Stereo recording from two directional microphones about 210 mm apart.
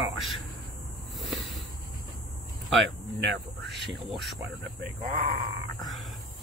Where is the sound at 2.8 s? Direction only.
55° right (ahead or behind).